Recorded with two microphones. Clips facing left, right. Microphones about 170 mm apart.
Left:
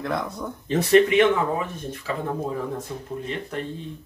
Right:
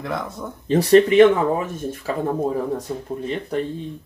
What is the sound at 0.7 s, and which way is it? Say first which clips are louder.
Speech: right 4 dB; 35° right (ahead or behind).